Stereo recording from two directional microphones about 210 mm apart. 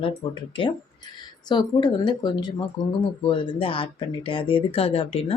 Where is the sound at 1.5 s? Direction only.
20° left (ahead or behind).